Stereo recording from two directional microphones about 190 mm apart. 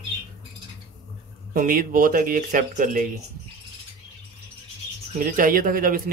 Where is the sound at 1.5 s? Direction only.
45° right (ahead or behind).